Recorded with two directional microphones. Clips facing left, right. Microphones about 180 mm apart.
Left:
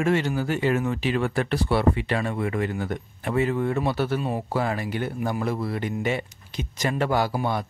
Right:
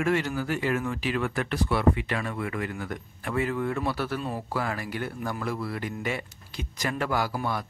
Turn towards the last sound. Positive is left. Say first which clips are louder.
# left 4 dB
turn(degrees=25)  # may be behind; listen again after turning